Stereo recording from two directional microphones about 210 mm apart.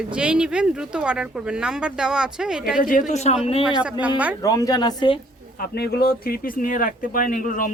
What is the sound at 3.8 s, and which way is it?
Speech, 5° right (ahead or behind).